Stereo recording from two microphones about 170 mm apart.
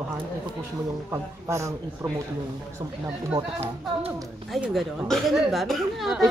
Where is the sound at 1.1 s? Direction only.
20° right (ahead or behind).